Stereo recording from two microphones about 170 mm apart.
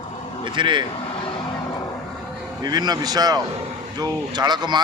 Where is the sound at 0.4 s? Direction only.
30° right (ahead or behind).